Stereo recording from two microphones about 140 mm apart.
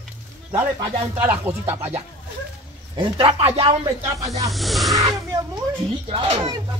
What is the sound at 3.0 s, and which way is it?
Speech, 40° right (ahead or behind).